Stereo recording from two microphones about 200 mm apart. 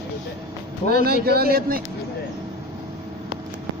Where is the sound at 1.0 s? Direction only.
50° right (ahead or behind).